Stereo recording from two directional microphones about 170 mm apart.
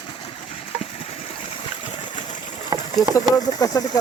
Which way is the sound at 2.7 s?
20° right (ahead or behind).